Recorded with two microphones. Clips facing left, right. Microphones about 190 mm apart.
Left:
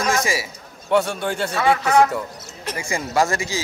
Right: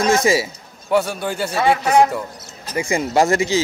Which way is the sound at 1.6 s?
15° right (ahead or behind).